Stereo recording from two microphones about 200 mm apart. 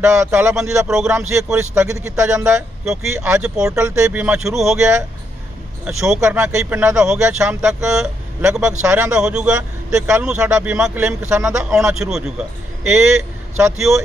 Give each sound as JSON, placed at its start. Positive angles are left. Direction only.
{"t": 0.2, "sound": "a man's voice", "side_deg": -5}
{"t": 2.3, "sound": "a man's voice", "side_deg": -5}